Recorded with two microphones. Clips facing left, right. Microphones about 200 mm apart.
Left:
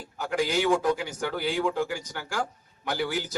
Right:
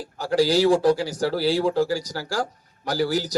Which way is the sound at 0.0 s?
35° right (ahead or behind).